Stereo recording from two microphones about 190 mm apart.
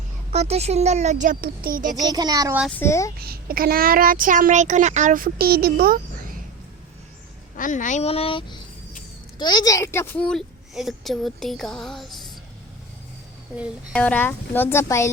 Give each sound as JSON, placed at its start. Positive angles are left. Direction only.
{"t": 0.3, "sound": "speech", "side_deg": -35}
{"t": 2.0, "sound": "a child's voice", "side_deg": -20}
{"t": 2.6, "sound": "a woman's voice", "side_deg": 10}
{"t": 3.2, "sound": "a child's voice", "side_deg": -50}
{"t": 7.5, "sound": "a woman's voice", "side_deg": 45}
{"t": 13.9, "sound": "a woman's voice", "side_deg": 5}